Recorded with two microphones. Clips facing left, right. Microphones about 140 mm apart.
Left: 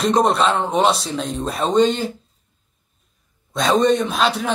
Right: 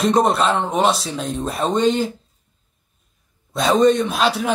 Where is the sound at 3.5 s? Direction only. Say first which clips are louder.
Right 1 dB; centre (ahead or behind).